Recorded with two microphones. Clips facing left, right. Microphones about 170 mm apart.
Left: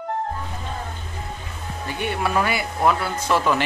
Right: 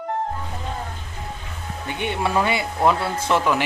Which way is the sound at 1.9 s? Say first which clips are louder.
Right 1 dB; 20° right (ahead or behind).